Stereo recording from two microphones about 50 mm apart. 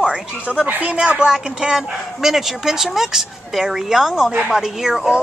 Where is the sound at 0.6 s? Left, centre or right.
Right.